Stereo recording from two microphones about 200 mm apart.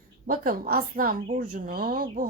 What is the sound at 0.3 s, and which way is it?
A woman's voice, 45° right (ahead or behind).